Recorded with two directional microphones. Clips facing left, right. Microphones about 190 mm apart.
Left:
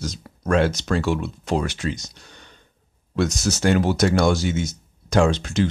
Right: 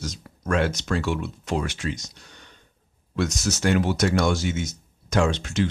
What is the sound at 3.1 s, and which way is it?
Speech, 35° left (ahead or behind).